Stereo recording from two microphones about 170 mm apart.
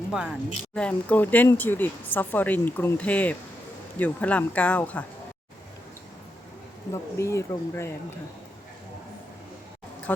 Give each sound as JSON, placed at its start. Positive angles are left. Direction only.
{"t": 0.1, "sound": "speech", "side_deg": -5}
{"t": 0.7, "sound": "speech", "side_deg": 5}
{"t": 6.9, "sound": "speech", "side_deg": 15}